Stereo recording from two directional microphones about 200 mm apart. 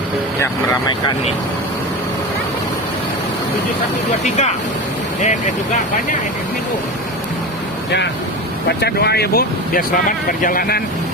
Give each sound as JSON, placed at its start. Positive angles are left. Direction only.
{"t": 8.8, "sound": "speech", "side_deg": 55}